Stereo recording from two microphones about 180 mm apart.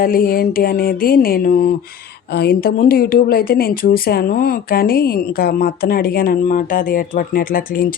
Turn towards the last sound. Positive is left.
turn(degrees=50)  # may be behind; listen again after turning